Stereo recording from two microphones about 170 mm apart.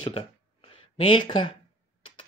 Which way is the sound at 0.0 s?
30° left (ahead or behind).